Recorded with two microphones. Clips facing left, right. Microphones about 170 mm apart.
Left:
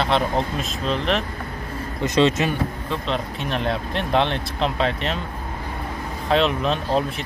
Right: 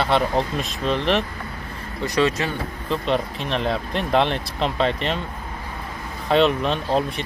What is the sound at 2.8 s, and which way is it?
Speech, centre (ahead or behind).